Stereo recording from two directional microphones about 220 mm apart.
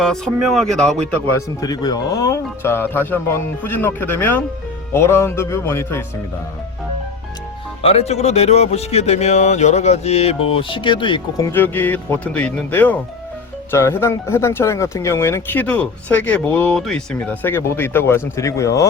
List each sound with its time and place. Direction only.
0.0 s speech: centre (ahead or behind)
1.4 s speech: 15° left (ahead or behind)
7.8 s speech: 25° left (ahead or behind)
11.5 s speech: 10° left (ahead or behind)